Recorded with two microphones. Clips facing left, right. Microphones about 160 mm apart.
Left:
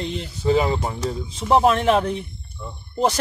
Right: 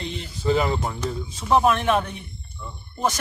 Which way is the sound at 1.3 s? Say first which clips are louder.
Left 2 dB; 25° left (ahead or behind).